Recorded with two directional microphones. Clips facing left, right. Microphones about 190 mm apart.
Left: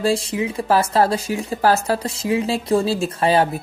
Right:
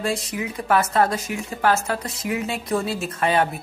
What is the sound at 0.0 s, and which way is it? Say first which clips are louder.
Speech: left 6 dB; 30° left (ahead or behind).